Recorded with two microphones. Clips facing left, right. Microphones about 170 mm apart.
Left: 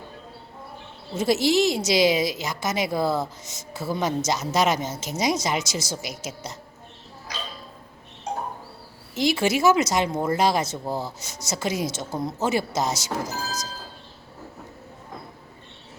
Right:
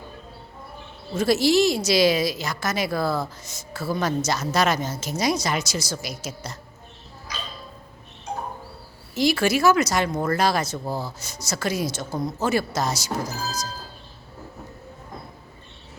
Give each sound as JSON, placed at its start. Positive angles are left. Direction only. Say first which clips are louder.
{"t": 1.1, "sound": "speech", "louder": "right 2 dB", "side_deg": 20}
{"t": 9.1, "sound": "speech", "louder": "right 1 dB", "side_deg": 20}